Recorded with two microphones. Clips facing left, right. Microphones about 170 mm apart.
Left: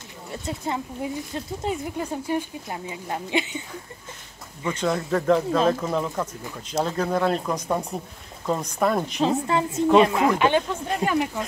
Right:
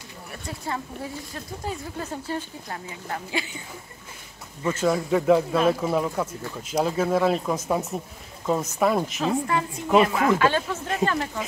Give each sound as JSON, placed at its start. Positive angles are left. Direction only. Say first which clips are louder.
{"t": 0.3, "sound": "speech", "louder": "left 3 dB", "side_deg": 20}
{"t": 4.6, "sound": "speech", "louder": "right 2 dB", "side_deg": -5}
{"t": 9.2, "sound": "speech", "louder": "left 2 dB", "side_deg": 25}